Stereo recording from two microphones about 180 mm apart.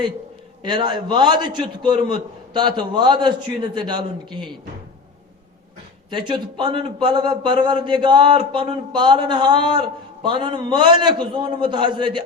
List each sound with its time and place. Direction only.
0.6 s speech: 25° right (ahead or behind)
6.1 s speech: 25° right (ahead or behind)